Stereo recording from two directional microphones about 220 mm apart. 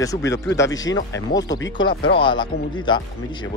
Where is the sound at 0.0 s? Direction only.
15° left (ahead or behind).